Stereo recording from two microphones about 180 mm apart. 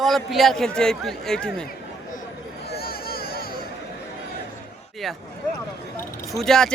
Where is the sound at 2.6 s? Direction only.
60° left (ahead or behind).